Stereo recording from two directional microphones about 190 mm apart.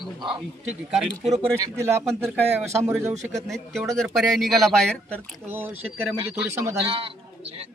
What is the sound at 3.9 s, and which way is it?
Speech, centre (ahead or behind).